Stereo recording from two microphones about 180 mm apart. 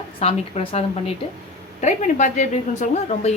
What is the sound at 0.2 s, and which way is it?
A woman's voice, 35° left (ahead or behind).